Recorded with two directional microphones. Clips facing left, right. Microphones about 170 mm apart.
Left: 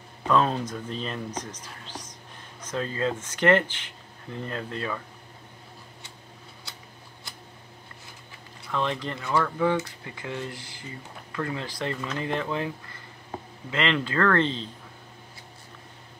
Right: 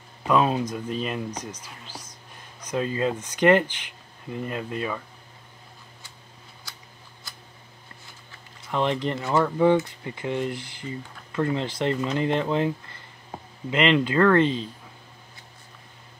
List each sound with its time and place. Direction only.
0.3 s speech: 10° right (ahead or behind)
8.7 s speech: 20° right (ahead or behind)